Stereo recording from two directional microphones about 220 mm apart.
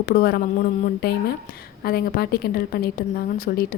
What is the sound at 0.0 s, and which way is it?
A woman's voice, 40° left (ahead or behind).